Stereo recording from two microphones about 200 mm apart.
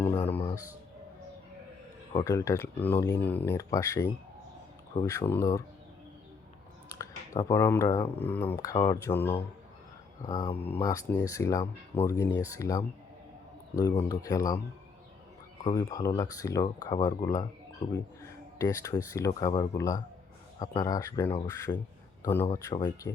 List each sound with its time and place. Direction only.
0.1 s music: 30° left (ahead or behind)
2.1 s speech: 15° left (ahead or behind)
5.0 s speech: 15° left (ahead or behind)
6.8 s clicking: 15° left (ahead or behind)
8.2 s speech: 10° left (ahead or behind)
10.2 s speech: 20° left (ahead or behind)
15.6 s speech: 20° left (ahead or behind)